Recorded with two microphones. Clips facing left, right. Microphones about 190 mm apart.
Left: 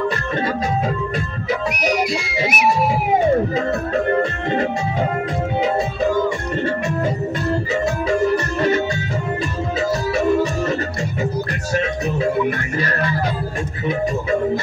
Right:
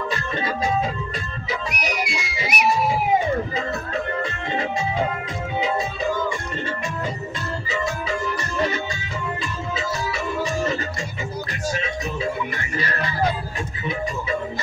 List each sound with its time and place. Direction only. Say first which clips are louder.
2.0 s music: left 7 dB; 40° left (ahead or behind)
9.8 s music: left 9 dB; 50° left (ahead or behind)
11.7 s music: left 10 dB; 55° left (ahead or behind)